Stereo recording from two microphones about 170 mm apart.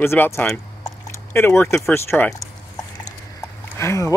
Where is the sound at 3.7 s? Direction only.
15° left (ahead or behind).